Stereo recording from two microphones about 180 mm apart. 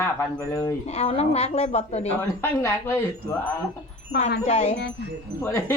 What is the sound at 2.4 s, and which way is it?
Speech, 15° left (ahead or behind).